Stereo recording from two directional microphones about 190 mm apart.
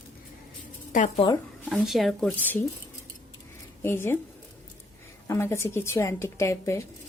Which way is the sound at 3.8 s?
10° left (ahead or behind).